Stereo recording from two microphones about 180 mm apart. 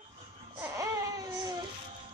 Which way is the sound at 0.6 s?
15° right (ahead or behind).